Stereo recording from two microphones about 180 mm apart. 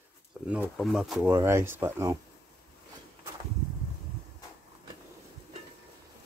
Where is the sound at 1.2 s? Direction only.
15° right (ahead or behind).